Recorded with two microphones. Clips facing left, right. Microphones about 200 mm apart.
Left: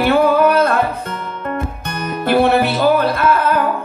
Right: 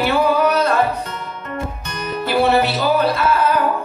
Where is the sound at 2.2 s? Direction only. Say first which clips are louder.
Left 2 dB; 55° left (ahead or behind).